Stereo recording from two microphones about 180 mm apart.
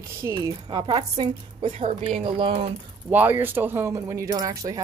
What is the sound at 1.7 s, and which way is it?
Speech, 40° right (ahead or behind).